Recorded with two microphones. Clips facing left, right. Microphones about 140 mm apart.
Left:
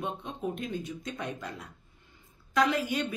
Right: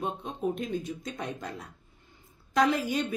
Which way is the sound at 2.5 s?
40° right (ahead or behind).